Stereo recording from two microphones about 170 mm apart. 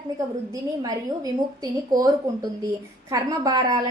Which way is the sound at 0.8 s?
20° right (ahead or behind).